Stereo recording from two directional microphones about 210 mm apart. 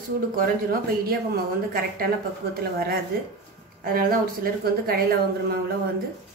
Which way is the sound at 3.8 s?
45° right (ahead or behind).